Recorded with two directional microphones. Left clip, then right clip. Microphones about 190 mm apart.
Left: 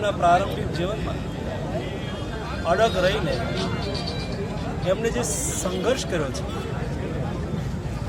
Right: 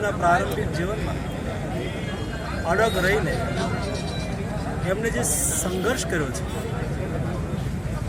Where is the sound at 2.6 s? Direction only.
Centre (ahead or behind).